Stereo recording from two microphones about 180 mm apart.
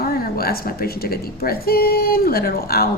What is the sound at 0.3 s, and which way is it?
A woman's voice, 60° left (ahead or behind).